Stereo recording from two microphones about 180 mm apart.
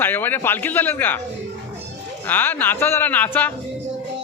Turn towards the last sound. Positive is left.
turn(degrees=10)  # may be behind; listen again after turning